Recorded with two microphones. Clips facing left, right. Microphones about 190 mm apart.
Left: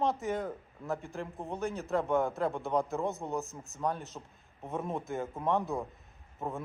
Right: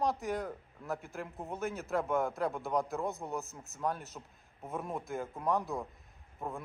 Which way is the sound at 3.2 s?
15° left (ahead or behind).